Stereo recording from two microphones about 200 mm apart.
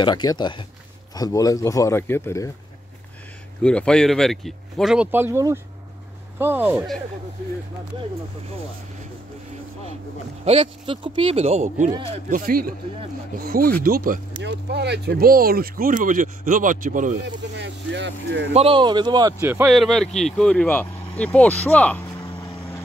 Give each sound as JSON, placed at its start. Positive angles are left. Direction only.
{"t": 0.0, "sound": "speech", "side_deg": 20}
{"t": 3.6, "sound": "speech", "side_deg": 5}
{"t": 10.4, "sound": "speech", "side_deg": -30}
{"t": 12.3, "sound": "speech", "side_deg": -45}
{"t": 14.4, "sound": "speech", "side_deg": -55}
{"t": 17.6, "sound": "speech", "side_deg": -60}
{"t": 18.5, "sound": "a man's voice", "side_deg": -30}
{"t": 19.7, "sound": "speech", "side_deg": 0}
{"t": 22.2, "sound": "a sound", "side_deg": 15}